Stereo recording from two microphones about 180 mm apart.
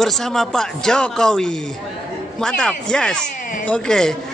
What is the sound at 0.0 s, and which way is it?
Speech, centre (ahead or behind).